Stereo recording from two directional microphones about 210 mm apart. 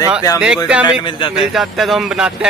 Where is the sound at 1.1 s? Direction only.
25° left (ahead or behind).